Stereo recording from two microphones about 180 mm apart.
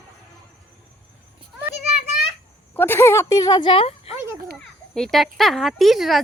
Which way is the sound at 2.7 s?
10° left (ahead or behind).